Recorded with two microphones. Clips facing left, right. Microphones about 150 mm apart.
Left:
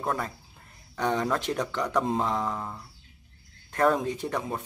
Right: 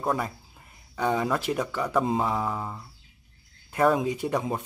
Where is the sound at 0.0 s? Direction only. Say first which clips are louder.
Right 3 dB; 10° right (ahead or behind).